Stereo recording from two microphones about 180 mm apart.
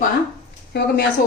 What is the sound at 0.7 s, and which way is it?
Speech, 65° left (ahead or behind).